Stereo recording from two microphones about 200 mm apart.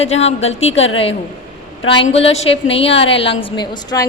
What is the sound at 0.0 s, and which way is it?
Speech, 30° left (ahead or behind).